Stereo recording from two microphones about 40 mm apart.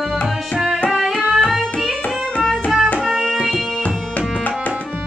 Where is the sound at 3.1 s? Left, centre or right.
Centre.